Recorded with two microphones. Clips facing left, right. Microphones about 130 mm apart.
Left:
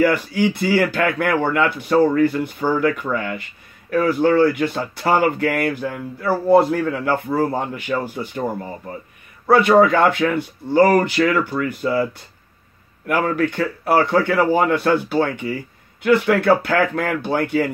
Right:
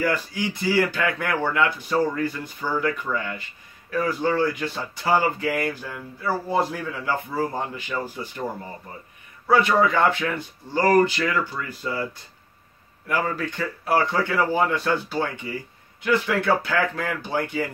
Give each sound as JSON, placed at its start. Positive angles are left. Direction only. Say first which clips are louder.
{"t": 0.0, "sound": "speech", "louder": "left 8 dB", "side_deg": 60}
{"t": 9.5, "sound": "speech", "louder": "left 6 dB", "side_deg": 60}